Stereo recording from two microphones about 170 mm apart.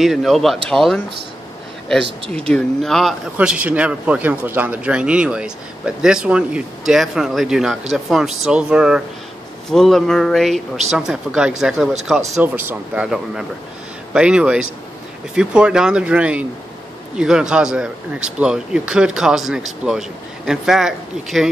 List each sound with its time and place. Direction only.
0.0 s speech: centre (ahead or behind)
2.3 s speech: 5° left (ahead or behind)